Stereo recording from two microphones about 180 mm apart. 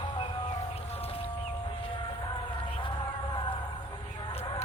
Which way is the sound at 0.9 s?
35° left (ahead or behind).